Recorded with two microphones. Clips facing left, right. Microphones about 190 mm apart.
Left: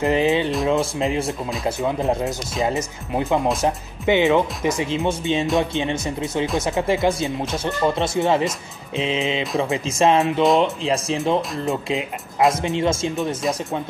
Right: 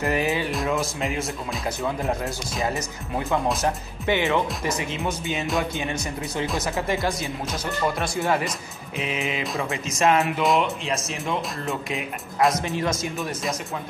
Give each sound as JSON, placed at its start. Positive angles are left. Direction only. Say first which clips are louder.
{"t": 0.0, "sound": "speech", "louder": "left 5 dB", "side_deg": 20}
{"t": 1.8, "sound": "speech", "louder": "left 5 dB", "side_deg": 20}
{"t": 12.4, "sound": "speech", "louder": "left 5 dB", "side_deg": 25}